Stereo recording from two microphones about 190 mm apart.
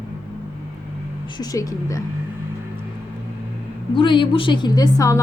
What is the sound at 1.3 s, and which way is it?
Speech, 20° left (ahead or behind).